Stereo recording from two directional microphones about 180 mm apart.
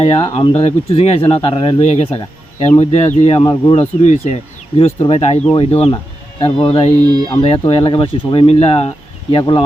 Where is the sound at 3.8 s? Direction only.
40° left (ahead or behind).